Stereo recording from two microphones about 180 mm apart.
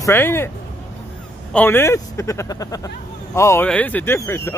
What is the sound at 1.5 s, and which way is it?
Speech, 10° left (ahead or behind).